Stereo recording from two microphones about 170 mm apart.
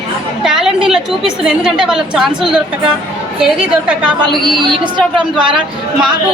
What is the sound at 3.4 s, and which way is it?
Speech, 5° right (ahead or behind).